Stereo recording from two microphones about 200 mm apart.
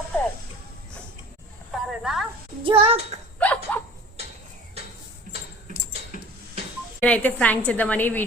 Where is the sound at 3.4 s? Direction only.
5° left (ahead or behind).